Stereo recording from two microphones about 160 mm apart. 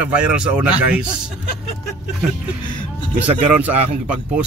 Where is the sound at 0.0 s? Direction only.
5° right (ahead or behind).